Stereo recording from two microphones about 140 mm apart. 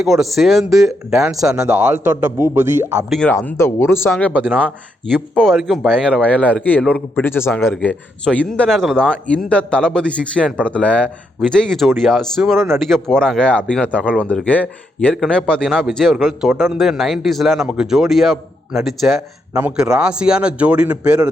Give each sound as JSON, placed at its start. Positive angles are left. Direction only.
{"t": 0.0, "sound": "a man's voice", "side_deg": 0}
{"t": 3.1, "sound": "a man's voice", "side_deg": 5}
{"t": 3.3, "sound": "a man's voice", "side_deg": 15}